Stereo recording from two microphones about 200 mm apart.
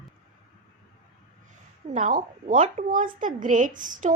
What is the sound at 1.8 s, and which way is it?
A woman's voice, 40° right (ahead or behind).